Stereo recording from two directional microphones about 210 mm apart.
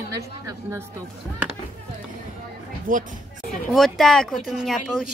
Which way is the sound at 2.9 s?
40° right (ahead or behind).